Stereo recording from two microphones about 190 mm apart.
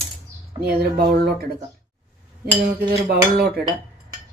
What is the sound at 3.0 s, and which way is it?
Speech, 60° right (ahead or behind).